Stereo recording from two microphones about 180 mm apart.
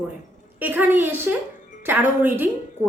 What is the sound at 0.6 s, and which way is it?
A woman's voice, 10° right (ahead or behind).